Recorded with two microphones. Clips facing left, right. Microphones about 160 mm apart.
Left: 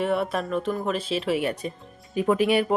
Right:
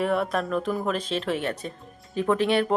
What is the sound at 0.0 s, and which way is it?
Speech, centre (ahead or behind).